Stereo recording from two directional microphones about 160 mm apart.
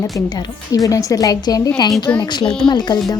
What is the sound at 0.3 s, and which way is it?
A woman's voice, 25° left (ahead or behind).